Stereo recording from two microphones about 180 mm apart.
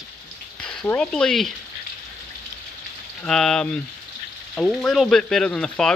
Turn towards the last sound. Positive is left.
turn(degrees=5)  # may be behind; listen again after turning